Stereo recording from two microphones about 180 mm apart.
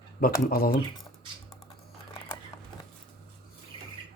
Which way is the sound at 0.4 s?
55° left (ahead or behind).